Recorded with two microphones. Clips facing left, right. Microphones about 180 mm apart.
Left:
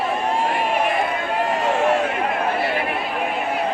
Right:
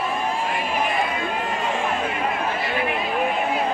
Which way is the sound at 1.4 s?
70° left (ahead or behind).